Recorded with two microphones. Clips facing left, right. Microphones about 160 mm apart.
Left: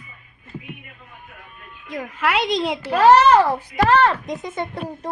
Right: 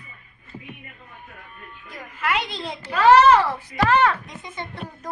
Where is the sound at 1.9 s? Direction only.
90° left.